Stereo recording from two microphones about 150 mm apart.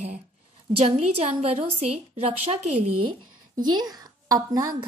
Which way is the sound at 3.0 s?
30° right (ahead or behind).